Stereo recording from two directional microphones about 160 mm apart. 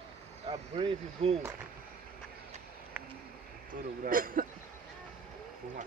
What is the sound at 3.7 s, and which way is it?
Speech, 60° right (ahead or behind).